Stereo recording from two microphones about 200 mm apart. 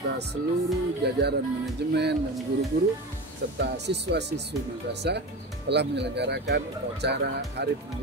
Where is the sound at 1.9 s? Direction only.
55° right (ahead or behind).